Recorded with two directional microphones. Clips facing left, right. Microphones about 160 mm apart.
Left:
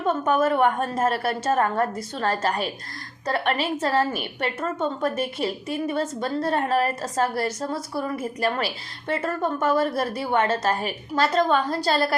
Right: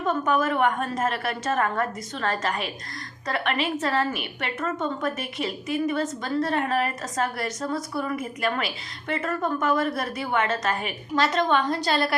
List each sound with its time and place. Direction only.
0.3 s a woman's voice: 30° left (ahead or behind)